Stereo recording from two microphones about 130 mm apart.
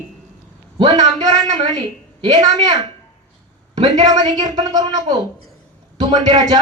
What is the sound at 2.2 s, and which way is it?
Speech, 30° right (ahead or behind).